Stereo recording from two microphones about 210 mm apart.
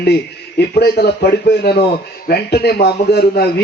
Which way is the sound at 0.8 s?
50° left (ahead or behind).